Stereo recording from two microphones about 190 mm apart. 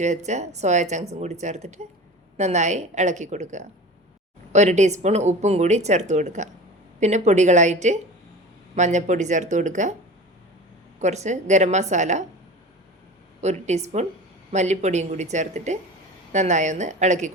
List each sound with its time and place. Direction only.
0.0 s speech: 40° right (ahead or behind)
11.0 s speech: 35° right (ahead or behind)
13.4 s speech: 35° right (ahead or behind)